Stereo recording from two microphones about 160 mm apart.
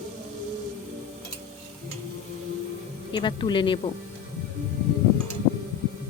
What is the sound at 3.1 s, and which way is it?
Speech, 30° left (ahead or behind).